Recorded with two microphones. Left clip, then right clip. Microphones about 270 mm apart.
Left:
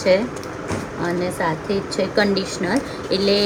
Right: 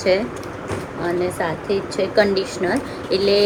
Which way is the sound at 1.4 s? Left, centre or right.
Centre.